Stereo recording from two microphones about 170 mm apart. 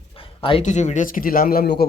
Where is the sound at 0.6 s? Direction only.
45° left (ahead or behind); by 1.9 s 65° left (ahead or behind).